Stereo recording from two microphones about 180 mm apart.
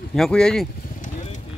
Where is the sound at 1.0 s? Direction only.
40° left (ahead or behind).